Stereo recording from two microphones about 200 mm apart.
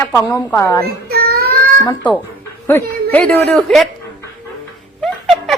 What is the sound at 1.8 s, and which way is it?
A woman's voice, 10° left (ahead or behind).